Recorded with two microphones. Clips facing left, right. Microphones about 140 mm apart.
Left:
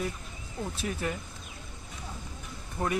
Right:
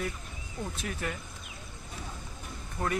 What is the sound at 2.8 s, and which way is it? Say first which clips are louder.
Speech: left 2 dB; 30° left (ahead or behind).